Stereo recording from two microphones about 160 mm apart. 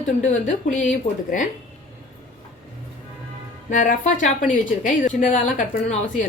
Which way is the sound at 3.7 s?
55° left (ahead or behind).